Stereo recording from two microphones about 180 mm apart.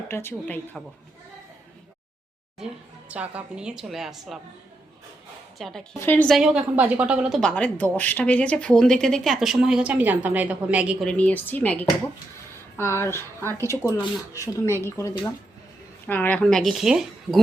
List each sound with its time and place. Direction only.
0.1 s speech: 15° left (ahead or behind)
3.1 s speech: 10° right (ahead or behind)
5.5 s speech: centre (ahead or behind)
11.0 s speech: 5° left (ahead or behind)